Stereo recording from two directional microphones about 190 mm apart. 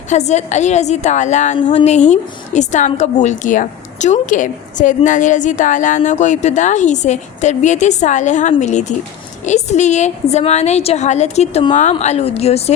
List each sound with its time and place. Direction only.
0.1 s a woman's voice: 35° left (ahead or behind)